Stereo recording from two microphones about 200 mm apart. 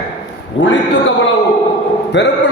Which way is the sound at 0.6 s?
65° left (ahead or behind).